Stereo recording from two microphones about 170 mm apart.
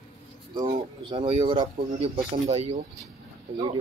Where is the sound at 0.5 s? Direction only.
25° right (ahead or behind).